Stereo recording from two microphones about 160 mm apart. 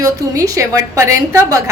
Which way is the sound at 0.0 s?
20° right (ahead or behind).